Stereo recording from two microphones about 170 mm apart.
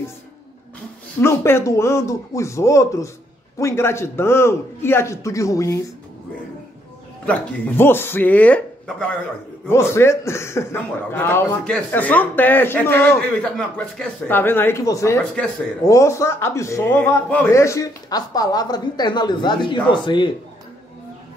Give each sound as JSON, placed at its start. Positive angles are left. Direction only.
{"t": 1.2, "sound": "speech", "side_deg": 15}
{"t": 7.2, "sound": "a man's voice", "side_deg": 15}